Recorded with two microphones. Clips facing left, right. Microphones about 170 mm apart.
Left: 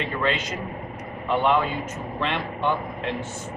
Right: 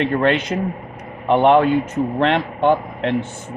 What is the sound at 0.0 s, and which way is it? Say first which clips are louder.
Speech: right 8 dB; 60° right (ahead or behind).